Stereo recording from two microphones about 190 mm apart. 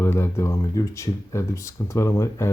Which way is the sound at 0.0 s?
15° left (ahead or behind).